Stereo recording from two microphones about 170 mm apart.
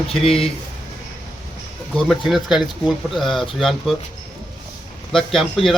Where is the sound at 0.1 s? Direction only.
Centre (ahead or behind).